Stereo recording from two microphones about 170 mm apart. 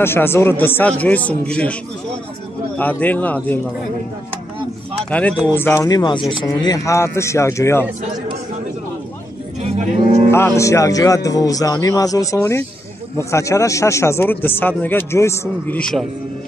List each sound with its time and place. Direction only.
0.0 s a man's voice: 15° left (ahead or behind)
2.8 s a man's voice: 10° left (ahead or behind)
5.1 s a man's voice: 10° left (ahead or behind)
10.3 s a man's voice: 15° left (ahead or behind)